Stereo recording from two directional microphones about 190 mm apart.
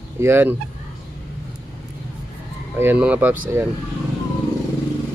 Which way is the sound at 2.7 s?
10° right (ahead or behind).